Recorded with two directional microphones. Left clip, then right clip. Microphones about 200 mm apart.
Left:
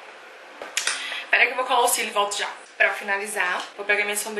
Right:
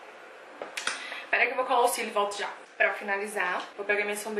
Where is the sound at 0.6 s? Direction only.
10° right (ahead or behind).